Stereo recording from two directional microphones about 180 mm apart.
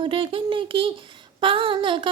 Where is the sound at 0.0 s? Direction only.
30° right (ahead or behind).